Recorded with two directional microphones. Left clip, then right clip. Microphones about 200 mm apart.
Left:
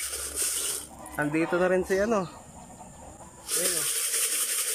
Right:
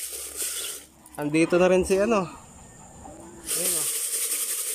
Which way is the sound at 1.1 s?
15° right (ahead or behind).